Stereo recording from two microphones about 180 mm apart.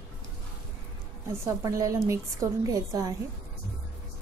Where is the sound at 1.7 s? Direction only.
15° right (ahead or behind).